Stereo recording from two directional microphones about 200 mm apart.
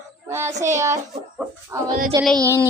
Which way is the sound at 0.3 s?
15° right (ahead or behind).